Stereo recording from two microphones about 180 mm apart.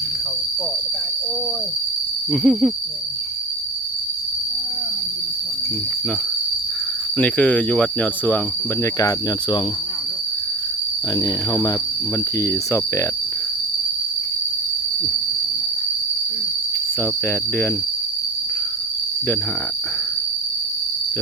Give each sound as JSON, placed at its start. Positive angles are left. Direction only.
{"t": 2.3, "sound": "hoot", "side_deg": 0}
{"t": 7.2, "sound": "speech", "side_deg": 10}
{"t": 8.8, "sound": "speech", "side_deg": 20}
{"t": 11.1, "sound": "speech", "side_deg": 20}
{"t": 17.0, "sound": "speech", "side_deg": 10}